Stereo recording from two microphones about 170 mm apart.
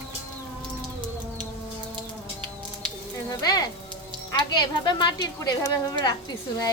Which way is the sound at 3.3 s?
25° left (ahead or behind).